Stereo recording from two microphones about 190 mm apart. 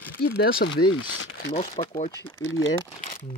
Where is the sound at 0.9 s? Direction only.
90° left.